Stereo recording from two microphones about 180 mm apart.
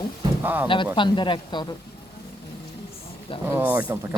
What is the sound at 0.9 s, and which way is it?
Speech, 25° left (ahead or behind).